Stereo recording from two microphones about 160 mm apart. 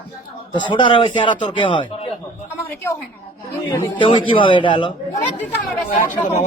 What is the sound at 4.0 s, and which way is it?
Speech, 30° left (ahead or behind).